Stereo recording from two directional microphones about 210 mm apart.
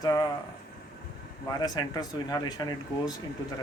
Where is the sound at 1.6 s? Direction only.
20° left (ahead or behind).